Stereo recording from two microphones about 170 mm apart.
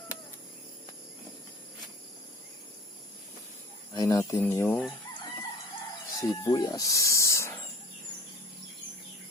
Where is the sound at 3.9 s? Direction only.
20° left (ahead or behind).